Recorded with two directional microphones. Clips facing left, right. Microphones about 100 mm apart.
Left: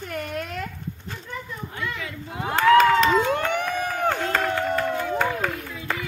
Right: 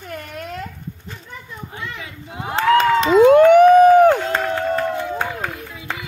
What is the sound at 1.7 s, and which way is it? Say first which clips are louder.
Speech: left 1 dB; 20° right (ahead or behind).